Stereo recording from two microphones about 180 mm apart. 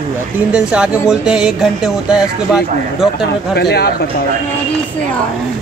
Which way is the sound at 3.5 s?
65° left (ahead or behind).